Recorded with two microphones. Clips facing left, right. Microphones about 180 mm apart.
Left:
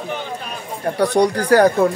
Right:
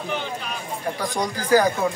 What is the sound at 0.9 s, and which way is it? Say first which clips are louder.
Speech: left 14 dB; 70° left (ahead or behind).